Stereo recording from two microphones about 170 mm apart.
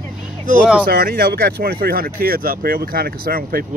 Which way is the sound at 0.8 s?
55° right (ahead or behind).